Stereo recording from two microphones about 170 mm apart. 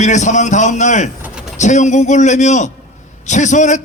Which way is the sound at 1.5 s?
45° left (ahead or behind).